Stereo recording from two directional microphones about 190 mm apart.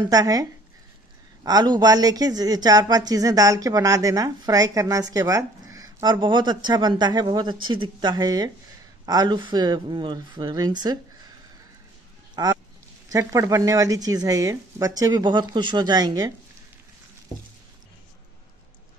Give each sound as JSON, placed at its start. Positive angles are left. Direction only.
{"t": 0.0, "sound": "speech", "side_deg": -20}
{"t": 12.4, "sound": "speech", "side_deg": -20}